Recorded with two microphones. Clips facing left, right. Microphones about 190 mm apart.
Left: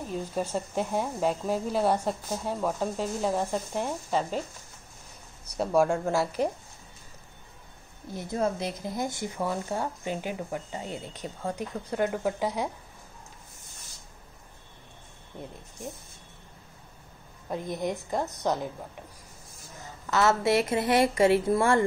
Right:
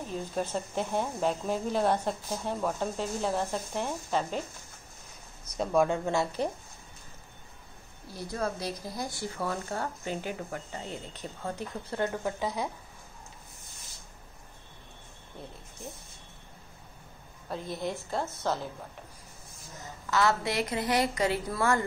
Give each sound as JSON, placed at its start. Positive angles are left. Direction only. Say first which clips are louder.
{"t": 0.1, "sound": "speech", "louder": "left 2 dB", "side_deg": 10}
{"t": 5.6, "sound": "a woman's voice", "louder": "left 2 dB", "side_deg": 5}
{"t": 8.1, "sound": "speech", "louder": "left 4 dB", "side_deg": 20}
{"t": 17.5, "sound": "speech", "louder": "left 3 dB", "side_deg": 15}
{"t": 20.1, "sound": "speech", "louder": "left 4 dB", "side_deg": 20}